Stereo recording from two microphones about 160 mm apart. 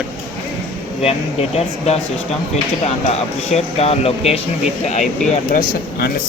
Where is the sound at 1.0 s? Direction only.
40° left (ahead or behind).